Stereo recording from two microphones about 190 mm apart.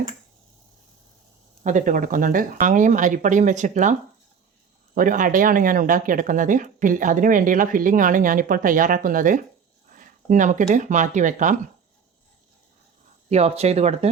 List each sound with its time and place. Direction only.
1.6 s speech: 45° right (ahead or behind)
4.9 s speech: 45° right (ahead or behind)
13.3 s speech: 35° right (ahead or behind)